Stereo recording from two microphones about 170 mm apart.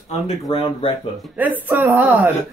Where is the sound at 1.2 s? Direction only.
10° right (ahead or behind).